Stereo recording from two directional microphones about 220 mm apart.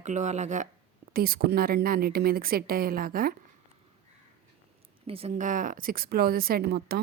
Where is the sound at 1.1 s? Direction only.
45° right (ahead or behind).